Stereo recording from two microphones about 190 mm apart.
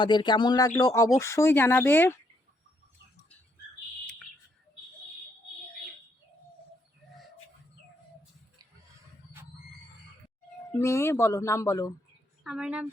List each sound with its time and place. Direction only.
0.0 s speech: 25° left (ahead or behind)
10.8 s speech: 15° left (ahead or behind)
12.4 s a woman's voice: 5° right (ahead or behind)